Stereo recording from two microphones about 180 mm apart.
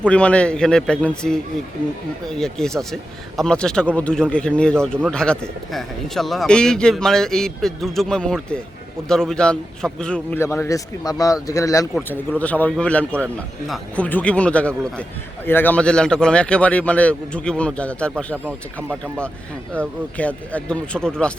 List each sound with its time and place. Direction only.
0.0 s a man's voice: 5° left (ahead or behind)
19.8 s a man's voice: 5° left (ahead or behind)